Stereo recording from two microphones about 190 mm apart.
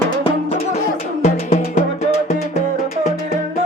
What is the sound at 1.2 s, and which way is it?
Music, 40° left (ahead or behind).